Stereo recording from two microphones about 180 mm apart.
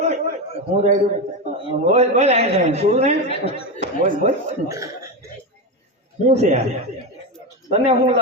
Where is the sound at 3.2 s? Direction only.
30° left (ahead or behind).